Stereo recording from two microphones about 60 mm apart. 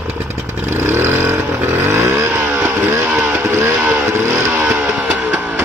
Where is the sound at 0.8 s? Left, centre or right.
Right.